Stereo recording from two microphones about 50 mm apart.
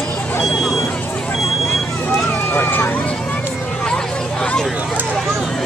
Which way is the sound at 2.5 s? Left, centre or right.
Left.